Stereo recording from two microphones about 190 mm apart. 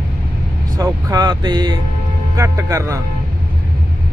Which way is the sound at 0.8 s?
15° right (ahead or behind).